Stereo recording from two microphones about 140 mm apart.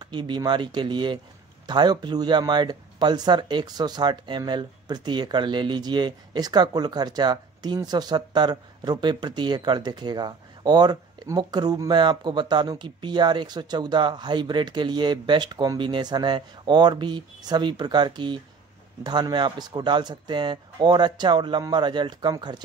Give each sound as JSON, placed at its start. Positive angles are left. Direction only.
{"t": 0.0, "sound": "speech", "side_deg": -35}